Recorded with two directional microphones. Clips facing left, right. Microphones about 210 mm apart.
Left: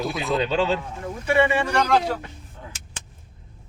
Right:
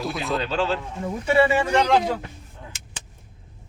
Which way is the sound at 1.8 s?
20° right (ahead or behind).